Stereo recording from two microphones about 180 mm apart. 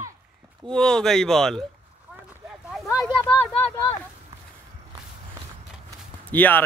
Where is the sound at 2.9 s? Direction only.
20° left (ahead or behind).